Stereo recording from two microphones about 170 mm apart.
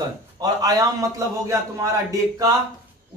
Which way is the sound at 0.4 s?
20° right (ahead or behind).